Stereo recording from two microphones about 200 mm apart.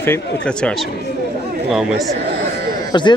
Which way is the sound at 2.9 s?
20° left (ahead or behind).